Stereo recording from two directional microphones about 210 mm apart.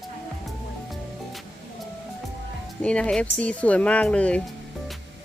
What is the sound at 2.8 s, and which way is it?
Speech, 5° left (ahead or behind).